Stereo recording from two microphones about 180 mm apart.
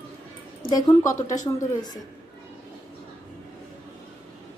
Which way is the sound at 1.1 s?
45° left (ahead or behind).